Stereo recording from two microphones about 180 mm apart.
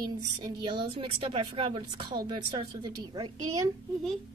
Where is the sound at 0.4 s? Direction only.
25° right (ahead or behind).